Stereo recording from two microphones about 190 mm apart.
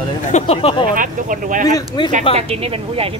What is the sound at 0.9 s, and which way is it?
Speech, 45° right (ahead or behind).